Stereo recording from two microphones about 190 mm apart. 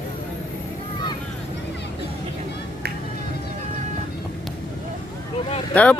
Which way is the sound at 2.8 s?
55° right (ahead or behind).